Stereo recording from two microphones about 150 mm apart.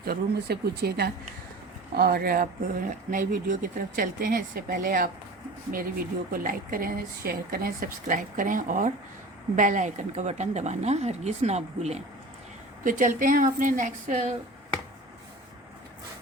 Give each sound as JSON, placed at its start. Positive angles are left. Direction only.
{"t": 0.0, "sound": "speech", "side_deg": -90}
{"t": 6.3, "sound": "speech", "side_deg": -70}
{"t": 12.8, "sound": "a woman's voice", "side_deg": -60}